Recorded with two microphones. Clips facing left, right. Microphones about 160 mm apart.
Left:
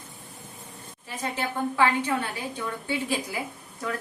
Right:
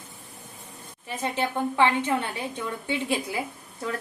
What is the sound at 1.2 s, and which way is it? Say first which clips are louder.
Speech: right 2 dB; 25° right (ahead or behind).